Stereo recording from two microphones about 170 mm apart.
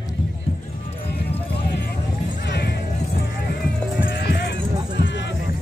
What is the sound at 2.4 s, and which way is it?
Music, 75° left (ahead or behind).